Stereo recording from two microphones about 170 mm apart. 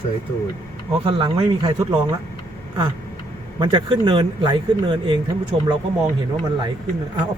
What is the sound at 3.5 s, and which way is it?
Speech, 30° right (ahead or behind).